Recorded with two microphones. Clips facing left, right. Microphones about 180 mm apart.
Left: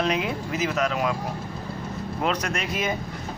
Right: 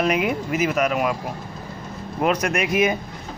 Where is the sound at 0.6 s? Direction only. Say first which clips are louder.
Right 3 dB; 10° right (ahead or behind).